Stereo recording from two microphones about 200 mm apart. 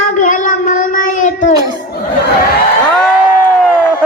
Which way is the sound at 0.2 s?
40° left (ahead or behind).